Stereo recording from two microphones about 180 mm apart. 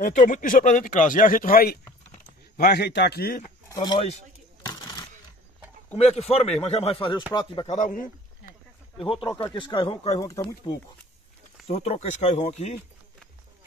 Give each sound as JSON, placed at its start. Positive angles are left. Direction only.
{"t": 0.0, "sound": "speech", "side_deg": 45}
{"t": 3.6, "sound": "speech", "side_deg": 20}
{"t": 4.6, "sound": "a sound", "side_deg": 20}
{"t": 5.9, "sound": "speech", "side_deg": 35}
{"t": 7.6, "sound": "a sound", "side_deg": 40}
{"t": 9.0, "sound": "speech", "side_deg": 30}
{"t": 11.6, "sound": "speech", "side_deg": 35}